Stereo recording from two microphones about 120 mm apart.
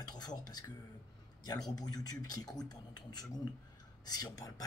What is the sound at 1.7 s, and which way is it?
Speech, 35° left (ahead or behind).